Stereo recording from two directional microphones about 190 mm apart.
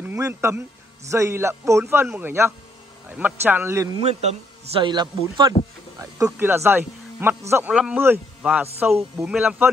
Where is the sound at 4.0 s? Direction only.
35° right (ahead or behind).